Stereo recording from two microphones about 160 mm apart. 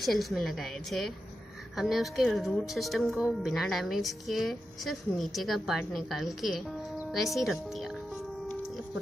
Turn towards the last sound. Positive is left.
turn(degrees=0)  # may be behind; listen again after turning